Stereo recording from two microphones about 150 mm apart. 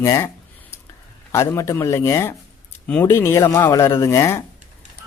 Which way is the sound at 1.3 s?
20° left (ahead or behind).